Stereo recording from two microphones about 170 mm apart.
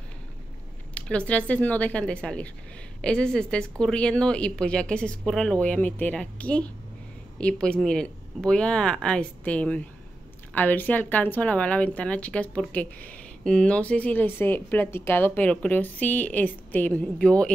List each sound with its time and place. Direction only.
0.9 s speech: 5° left (ahead or behind)